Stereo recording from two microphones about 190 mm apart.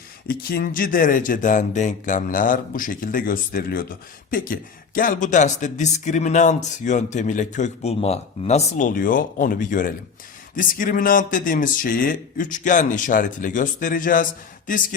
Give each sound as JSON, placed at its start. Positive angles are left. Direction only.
{"t": 0.3, "sound": "speech", "side_deg": 50}